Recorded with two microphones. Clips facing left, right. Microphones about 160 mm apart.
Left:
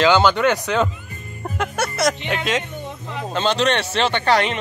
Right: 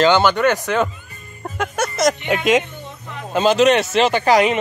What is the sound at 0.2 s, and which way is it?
Speech, 10° right (ahead or behind).